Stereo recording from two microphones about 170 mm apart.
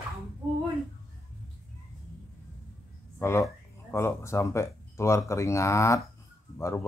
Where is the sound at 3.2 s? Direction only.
15° left (ahead or behind).